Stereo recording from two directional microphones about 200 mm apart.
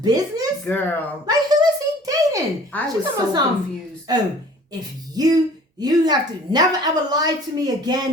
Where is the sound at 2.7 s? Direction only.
5° left (ahead or behind).